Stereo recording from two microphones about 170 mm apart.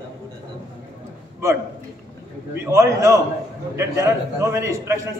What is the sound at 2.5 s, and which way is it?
A man's voice, 15° right (ahead or behind).